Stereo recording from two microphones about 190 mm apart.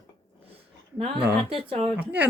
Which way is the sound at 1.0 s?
30° right (ahead or behind).